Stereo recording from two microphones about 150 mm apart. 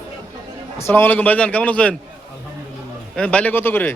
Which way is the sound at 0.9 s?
15° left (ahead or behind).